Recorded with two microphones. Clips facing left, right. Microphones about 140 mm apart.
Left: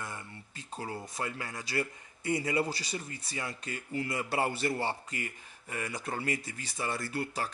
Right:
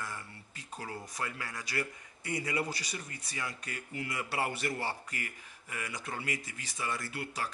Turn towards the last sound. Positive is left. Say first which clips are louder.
# left 4 dB
turn(degrees=35)  # may be behind; listen again after turning